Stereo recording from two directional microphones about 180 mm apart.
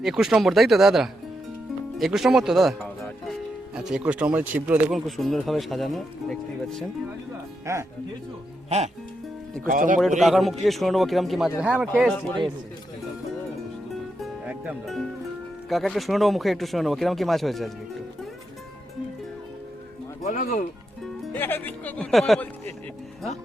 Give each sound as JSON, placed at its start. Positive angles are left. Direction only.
{"t": 0.0, "sound": "speech", "side_deg": 0}
{"t": 2.0, "sound": "music", "side_deg": 0}
{"t": 3.8, "sound": "speech", "side_deg": -5}
{"t": 7.6, "sound": "speech", "side_deg": -15}
{"t": 9.6, "sound": "a man's voice", "side_deg": -50}
{"t": 10.2, "sound": "speech", "side_deg": 0}
{"t": 14.2, "sound": "music", "side_deg": -5}
{"t": 15.7, "sound": "speech", "side_deg": 0}
{"t": 20.2, "sound": "speech", "side_deg": 45}
{"t": 21.0, "sound": "speech", "side_deg": 10}